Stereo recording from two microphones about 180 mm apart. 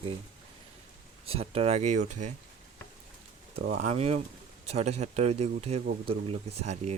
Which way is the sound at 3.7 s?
40° right (ahead or behind).